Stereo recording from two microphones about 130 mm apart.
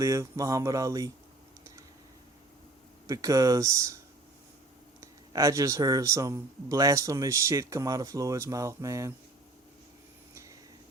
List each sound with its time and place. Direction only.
0.0 s speech: 25° right (ahead or behind)
3.1 s speech: 25° right (ahead or behind)
4.9 s speech: 25° right (ahead or behind)